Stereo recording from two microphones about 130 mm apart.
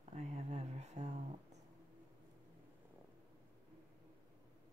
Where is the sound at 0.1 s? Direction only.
55° right (ahead or behind).